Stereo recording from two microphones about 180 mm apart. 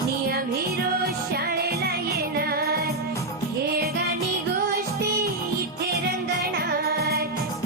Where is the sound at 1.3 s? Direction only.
60° right (ahead or behind).